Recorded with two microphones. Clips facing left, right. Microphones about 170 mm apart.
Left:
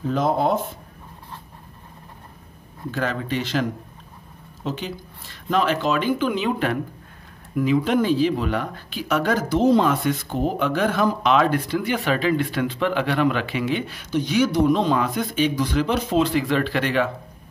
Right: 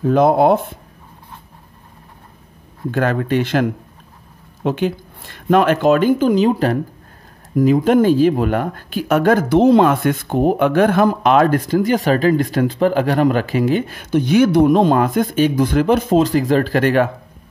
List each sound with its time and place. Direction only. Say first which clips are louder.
0.0 s speech: right 8 dB; 60° right (ahead or behind)
2.9 s speech: right 8 dB; 55° right (ahead or behind)